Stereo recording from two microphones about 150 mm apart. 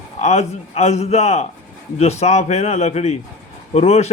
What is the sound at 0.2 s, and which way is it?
Speech, 50° left (ahead or behind).